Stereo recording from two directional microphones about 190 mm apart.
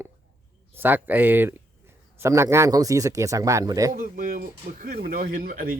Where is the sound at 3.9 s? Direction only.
45° right (ahead or behind).